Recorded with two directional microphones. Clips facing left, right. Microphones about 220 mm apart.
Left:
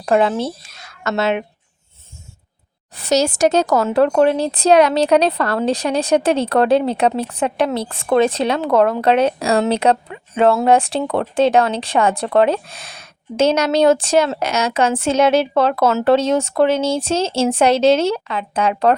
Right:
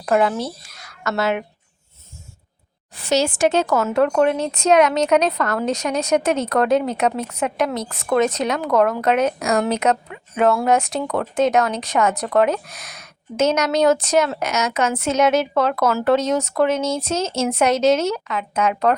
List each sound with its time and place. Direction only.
0.0 s a woman's voice: 25° left (ahead or behind)
3.0 s speech: 40° left (ahead or behind)